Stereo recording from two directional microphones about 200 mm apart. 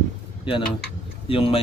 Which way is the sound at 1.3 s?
25° left (ahead or behind).